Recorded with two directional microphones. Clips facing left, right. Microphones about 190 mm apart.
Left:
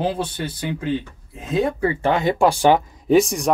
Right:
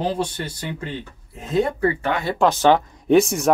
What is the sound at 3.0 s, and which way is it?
Speech, centre (ahead or behind).